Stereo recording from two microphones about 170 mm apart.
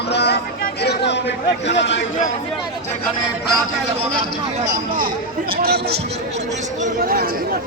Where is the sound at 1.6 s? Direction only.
90° left.